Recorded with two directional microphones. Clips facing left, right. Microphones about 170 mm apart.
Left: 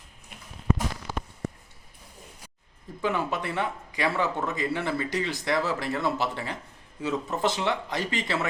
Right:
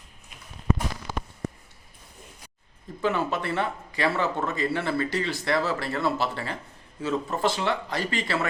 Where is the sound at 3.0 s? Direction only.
15° left (ahead or behind).